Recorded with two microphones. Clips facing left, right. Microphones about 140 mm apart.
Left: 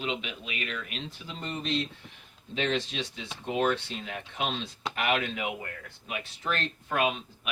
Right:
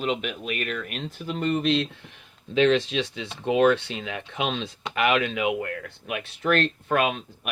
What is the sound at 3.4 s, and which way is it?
Speech, 90° right.